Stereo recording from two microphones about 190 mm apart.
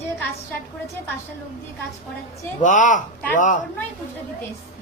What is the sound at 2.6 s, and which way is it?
Speech, 40° left (ahead or behind).